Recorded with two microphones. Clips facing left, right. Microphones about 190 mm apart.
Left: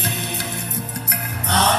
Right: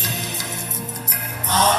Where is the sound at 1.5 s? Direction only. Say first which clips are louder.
Even; 70° left (ahead or behind).